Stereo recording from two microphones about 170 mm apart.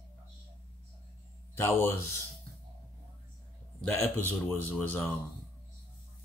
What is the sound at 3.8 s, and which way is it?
A man's voice, 10° left (ahead or behind).